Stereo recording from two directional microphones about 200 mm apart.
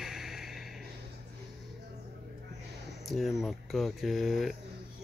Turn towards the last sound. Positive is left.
turn(degrees=0)  # may be behind; listen again after turning